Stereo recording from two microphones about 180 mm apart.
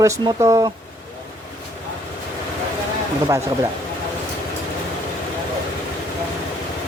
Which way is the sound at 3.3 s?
15° right (ahead or behind).